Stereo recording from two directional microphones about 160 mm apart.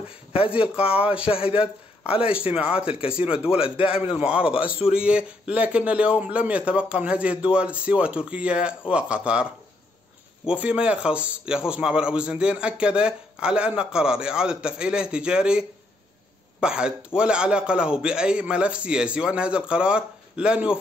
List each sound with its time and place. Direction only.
1.2 s a man's voice: 35° left (ahead or behind)
2.2 s a man's voice: 5° right (ahead or behind)
2.9 s a man's voice: 35° left (ahead or behind)
3.7 s a man's voice: 10° right (ahead or behind)